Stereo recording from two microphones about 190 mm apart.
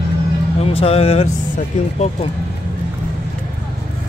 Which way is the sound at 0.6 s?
30° left (ahead or behind).